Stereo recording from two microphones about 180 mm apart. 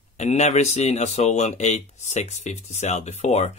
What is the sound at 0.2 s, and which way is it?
Speech, 40° left (ahead or behind).